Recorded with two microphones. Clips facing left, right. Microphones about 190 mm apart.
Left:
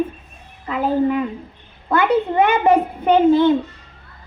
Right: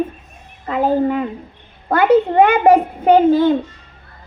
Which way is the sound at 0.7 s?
40° right (ahead or behind).